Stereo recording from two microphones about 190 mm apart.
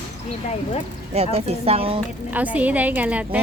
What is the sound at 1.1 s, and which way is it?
Speech, 35° right (ahead or behind).